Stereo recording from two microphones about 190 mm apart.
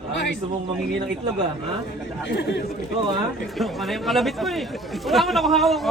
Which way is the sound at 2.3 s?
60° left (ahead or behind).